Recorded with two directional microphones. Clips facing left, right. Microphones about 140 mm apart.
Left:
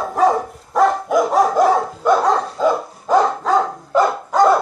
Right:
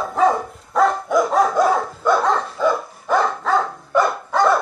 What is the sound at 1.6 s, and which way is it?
Dog, 25° left (ahead or behind).